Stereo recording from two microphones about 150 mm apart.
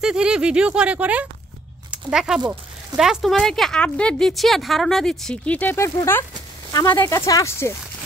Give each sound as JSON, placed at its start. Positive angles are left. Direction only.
{"t": 0.0, "sound": "a woman's voice", "side_deg": -5}